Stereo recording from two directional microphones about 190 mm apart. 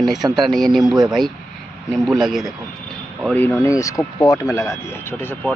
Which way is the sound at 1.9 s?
Centre (ahead or behind).